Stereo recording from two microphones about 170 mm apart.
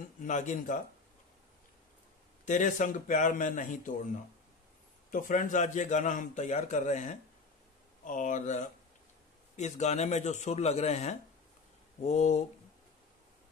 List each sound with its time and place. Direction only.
0.2 s a man's voice: 45° left (ahead or behind)
2.4 s a man's voice: 45° left (ahead or behind)
5.1 s a man's voice: 50° left (ahead or behind)